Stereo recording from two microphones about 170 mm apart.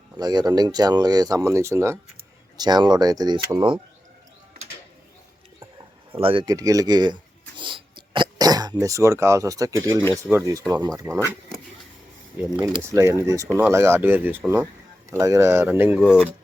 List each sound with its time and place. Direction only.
0.2 s speech: 25° right (ahead or behind)
6.1 s speech: 35° right (ahead or behind)
6.4 s speech: 20° right (ahead or behind)
12.5 s speech: 15° right (ahead or behind)